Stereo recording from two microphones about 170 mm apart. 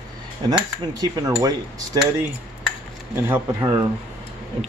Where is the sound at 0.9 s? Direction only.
20° right (ahead or behind).